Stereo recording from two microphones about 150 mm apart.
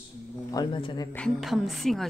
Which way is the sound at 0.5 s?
30° left (ahead or behind).